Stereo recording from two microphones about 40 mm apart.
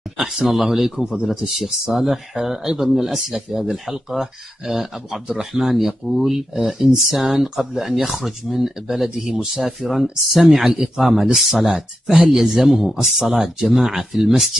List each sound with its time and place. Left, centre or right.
0.5 s speech: centre
9.5 s speech: centre